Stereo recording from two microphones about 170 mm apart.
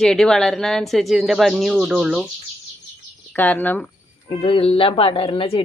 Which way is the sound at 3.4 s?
10° left (ahead or behind).